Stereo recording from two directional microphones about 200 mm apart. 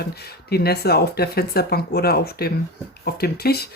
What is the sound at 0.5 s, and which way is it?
Speech, 50° left (ahead or behind).